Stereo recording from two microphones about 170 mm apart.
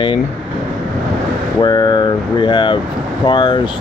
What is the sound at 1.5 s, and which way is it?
Speech, 25° left (ahead or behind).